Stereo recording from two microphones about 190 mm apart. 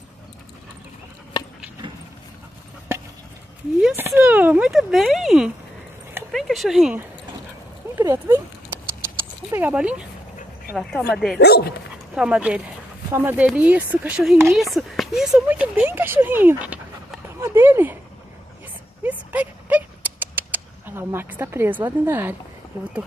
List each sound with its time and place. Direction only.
3.8 s speech: 10° right (ahead or behind)
8.0 s speech: 20° right (ahead or behind); by 11.1 s 5° left (ahead or behind)
11.3 s speech: 60° left (ahead or behind)
12.2 s speech: 5° right (ahead or behind)
19.0 s a sound: 10° right (ahead or behind)